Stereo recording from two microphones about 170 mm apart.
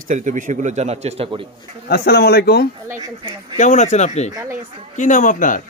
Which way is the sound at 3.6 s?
45° left (ahead or behind).